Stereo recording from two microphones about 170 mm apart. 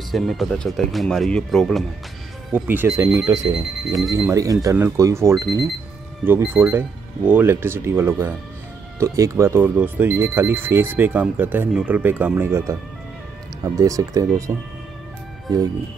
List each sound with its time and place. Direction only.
0.1 s speech: centre (ahead or behind)
2.5 s speech: 10° right (ahead or behind)
13.7 s speech: 20° right (ahead or behind)